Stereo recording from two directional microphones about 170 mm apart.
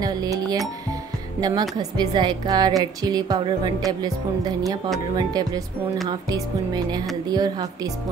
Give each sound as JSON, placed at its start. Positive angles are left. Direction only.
{"t": 0.0, "sound": "speech", "side_deg": -25}
{"t": 6.0, "sound": "speech", "side_deg": -25}